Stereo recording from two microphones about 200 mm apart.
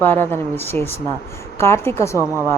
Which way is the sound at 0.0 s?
10° left (ahead or behind).